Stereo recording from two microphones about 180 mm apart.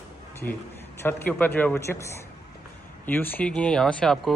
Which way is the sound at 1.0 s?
10° left (ahead or behind).